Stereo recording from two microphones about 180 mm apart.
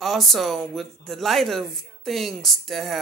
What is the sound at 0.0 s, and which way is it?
Speech, centre (ahead or behind).